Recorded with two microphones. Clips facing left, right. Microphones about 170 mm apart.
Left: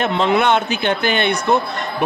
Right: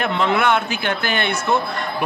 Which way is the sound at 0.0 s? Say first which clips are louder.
Left 3 dB; 20° left (ahead or behind).